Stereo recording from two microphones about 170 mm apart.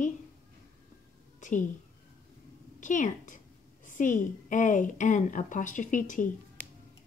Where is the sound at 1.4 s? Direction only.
45° left (ahead or behind).